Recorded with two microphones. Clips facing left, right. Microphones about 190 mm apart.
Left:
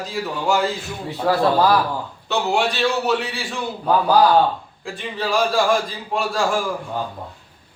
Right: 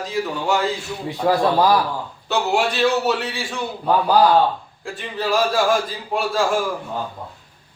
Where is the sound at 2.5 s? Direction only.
Centre (ahead or behind).